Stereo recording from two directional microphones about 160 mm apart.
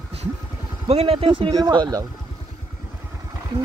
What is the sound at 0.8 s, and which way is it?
Speech, 35° right (ahead or behind).